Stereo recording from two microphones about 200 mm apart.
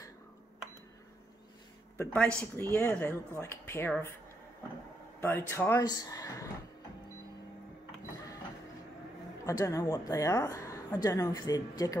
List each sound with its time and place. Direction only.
2.0 s a woman's voice: 5° left (ahead or behind)
5.2 s a woman's voice: 10° left (ahead or behind)
9.5 s a woman's voice: 15° left (ahead or behind)